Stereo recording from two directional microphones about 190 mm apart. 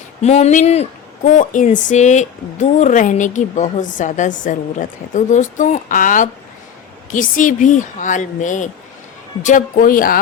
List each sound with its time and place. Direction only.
0.2 s speech: 35° left (ahead or behind)